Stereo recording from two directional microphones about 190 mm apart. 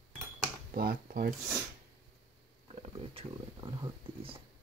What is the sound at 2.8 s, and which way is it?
Speech, 30° right (ahead or behind).